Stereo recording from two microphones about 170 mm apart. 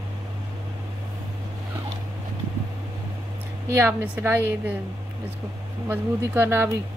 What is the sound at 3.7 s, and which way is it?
A woman's voice, 15° right (ahead or behind).